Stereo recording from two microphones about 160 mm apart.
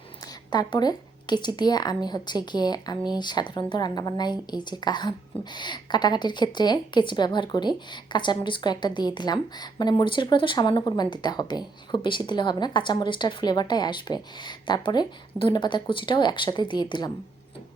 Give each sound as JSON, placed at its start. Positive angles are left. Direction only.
{"t": 0.5, "sound": "a woman's voice", "side_deg": 25}